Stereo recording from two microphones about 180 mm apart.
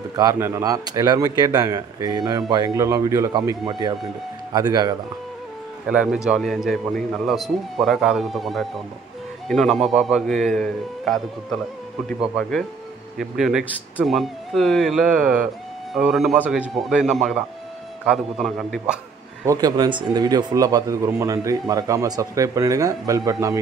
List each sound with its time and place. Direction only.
0.1 s speech: 20° right (ahead or behind)
5.9 s a man's voice: 5° right (ahead or behind)
19.4 s speech: 20° right (ahead or behind)